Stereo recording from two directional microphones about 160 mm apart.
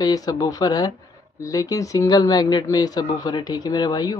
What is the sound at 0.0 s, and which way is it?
Speech, 25° left (ahead or behind).